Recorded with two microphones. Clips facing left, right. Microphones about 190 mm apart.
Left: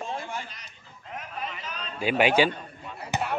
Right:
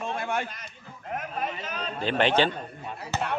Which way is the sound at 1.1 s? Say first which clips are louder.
Right 5 dB; 50° right (ahead or behind).